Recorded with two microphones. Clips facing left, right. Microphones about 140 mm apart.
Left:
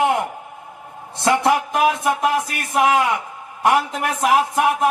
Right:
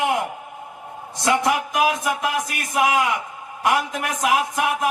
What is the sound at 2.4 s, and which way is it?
Speech, 35° left (ahead or behind).